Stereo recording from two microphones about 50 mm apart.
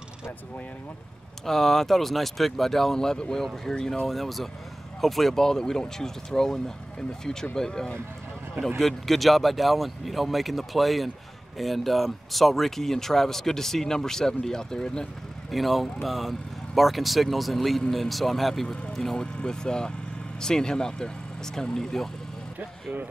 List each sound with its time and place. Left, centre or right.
1.4 s speech: centre
4.1 s speech: centre
15.5 s speech: centre